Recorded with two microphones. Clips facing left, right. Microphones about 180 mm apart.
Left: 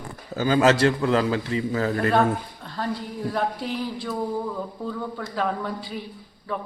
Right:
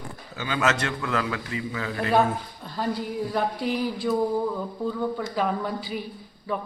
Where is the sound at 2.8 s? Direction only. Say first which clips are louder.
Right 1 dB; 10° right (ahead or behind).